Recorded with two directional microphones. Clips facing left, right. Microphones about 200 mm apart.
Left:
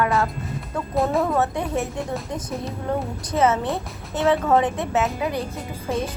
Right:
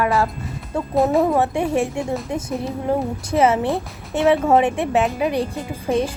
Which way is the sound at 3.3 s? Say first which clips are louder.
Right 3 dB; 25° right (ahead or behind).